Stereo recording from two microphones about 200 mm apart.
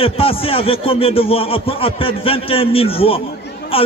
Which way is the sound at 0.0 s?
30° left (ahead or behind).